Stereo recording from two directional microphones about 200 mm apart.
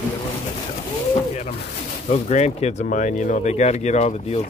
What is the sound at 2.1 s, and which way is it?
Speech, 35° left (ahead or behind).